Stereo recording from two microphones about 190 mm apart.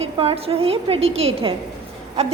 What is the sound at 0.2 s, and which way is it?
A woman's voice, 30° right (ahead or behind).